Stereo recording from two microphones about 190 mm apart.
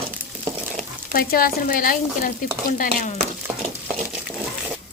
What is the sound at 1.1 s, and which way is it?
A woman's voice, 50° left (ahead or behind).